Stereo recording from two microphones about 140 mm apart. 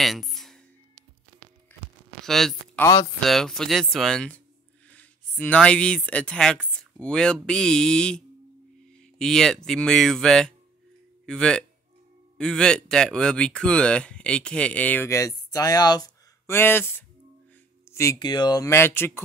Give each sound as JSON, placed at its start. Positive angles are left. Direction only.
{"t": 0.0, "sound": "a sound", "side_deg": 0}
{"t": 2.2, "sound": "speech", "side_deg": 0}
{"t": 2.8, "sound": "speech", "side_deg": 25}
{"t": 3.3, "sound": "speech", "side_deg": 5}
{"t": 6.7, "sound": "a sound", "side_deg": 5}
{"t": 7.4, "sound": "speech", "side_deg": 5}
{"t": 9.2, "sound": "speech", "side_deg": 5}
{"t": 16.5, "sound": "speech", "side_deg": 15}
{"t": 17.9, "sound": "a sound", "side_deg": 20}
{"t": 18.2, "sound": "speech", "side_deg": 30}